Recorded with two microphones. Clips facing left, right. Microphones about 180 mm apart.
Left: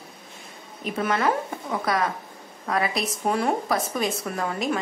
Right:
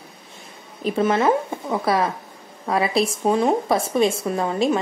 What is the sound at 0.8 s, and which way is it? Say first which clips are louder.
A woman's voice: right 6 dB; 30° right (ahead or behind).